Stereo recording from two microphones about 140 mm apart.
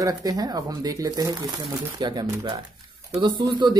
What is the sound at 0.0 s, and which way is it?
Speech, 25° right (ahead or behind).